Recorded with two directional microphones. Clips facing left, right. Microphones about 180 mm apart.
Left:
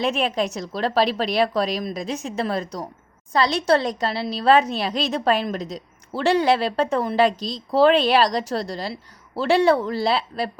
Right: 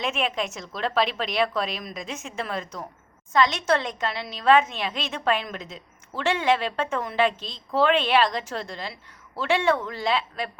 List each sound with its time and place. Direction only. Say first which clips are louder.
0.0 s a woman's voice: left 5 dB; 35° left (ahead or behind)